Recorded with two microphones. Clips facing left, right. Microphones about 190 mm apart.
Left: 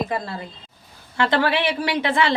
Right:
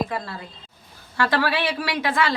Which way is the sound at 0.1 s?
20° left (ahead or behind).